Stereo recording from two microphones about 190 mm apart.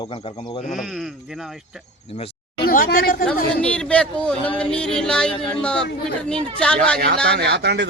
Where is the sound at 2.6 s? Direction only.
50° left (ahead or behind).